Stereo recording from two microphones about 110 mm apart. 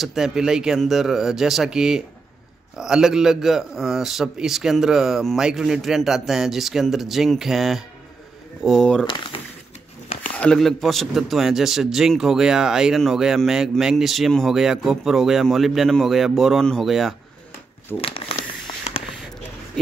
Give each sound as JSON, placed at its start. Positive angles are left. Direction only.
{"t": 0.0, "sound": "a man's voice", "side_deg": -5}
{"t": 10.3, "sound": "shuffling cards", "side_deg": 10}
{"t": 10.6, "sound": "a man's voice", "side_deg": 0}
{"t": 17.9, "sound": "speech", "side_deg": 20}